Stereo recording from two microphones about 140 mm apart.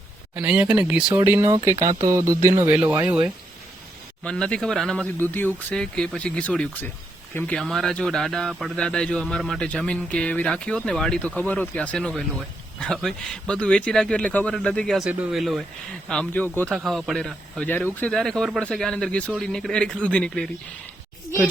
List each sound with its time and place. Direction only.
0.3 s speech: 10° right (ahead or behind)
4.2 s speech: 5° left (ahead or behind)
16.7 s speech: centre (ahead or behind)